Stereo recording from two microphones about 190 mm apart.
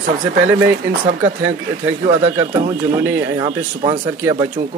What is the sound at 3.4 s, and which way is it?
Speech, 25° right (ahead or behind).